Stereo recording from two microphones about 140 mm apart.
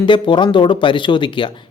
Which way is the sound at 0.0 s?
35° left (ahead or behind).